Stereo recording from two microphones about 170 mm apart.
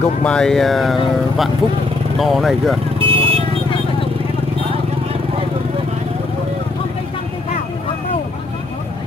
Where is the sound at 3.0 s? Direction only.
35° right (ahead or behind).